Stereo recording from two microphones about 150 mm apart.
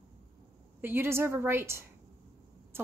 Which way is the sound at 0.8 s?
15° right (ahead or behind).